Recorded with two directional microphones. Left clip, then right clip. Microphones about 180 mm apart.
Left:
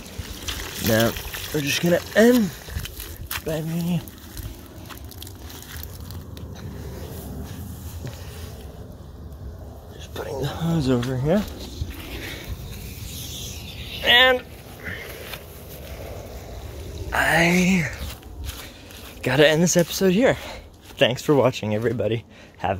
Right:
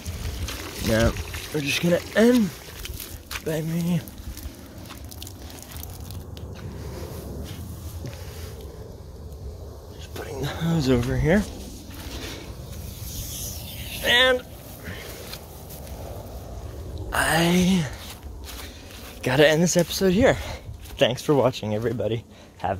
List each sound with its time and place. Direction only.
0.5 s water: 35° left (ahead or behind)
1.1 s pour: 40° left (ahead or behind)
1.5 s speech: 5° left (ahead or behind)
3.4 s speech: 15° right (ahead or behind)
10.1 s a sound: centre (ahead or behind)
11.1 s speech: 20° right (ahead or behind)
13.3 s a sound: 40° right (ahead or behind)
13.7 s a sound: 60° right (ahead or behind)
14.0 s a sound: centre (ahead or behind)
17.1 s whispering: 5° right (ahead or behind)
19.2 s speech: 5° left (ahead or behind)
21.0 s speech: 10° left (ahead or behind)